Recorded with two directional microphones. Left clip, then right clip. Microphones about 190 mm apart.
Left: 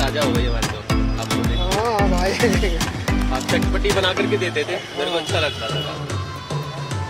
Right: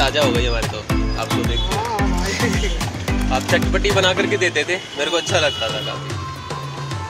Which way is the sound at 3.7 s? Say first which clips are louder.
Right 2 dB; 20° right (ahead or behind).